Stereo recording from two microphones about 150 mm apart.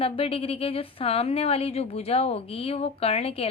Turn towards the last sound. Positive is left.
turn(degrees=40)  # may be behind; listen again after turning